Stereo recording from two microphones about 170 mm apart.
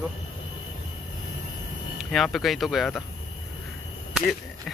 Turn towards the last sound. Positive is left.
turn(degrees=0)  # may be behind; listen again after turning